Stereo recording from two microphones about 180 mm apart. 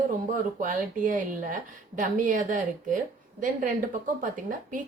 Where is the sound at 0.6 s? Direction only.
50° right (ahead or behind).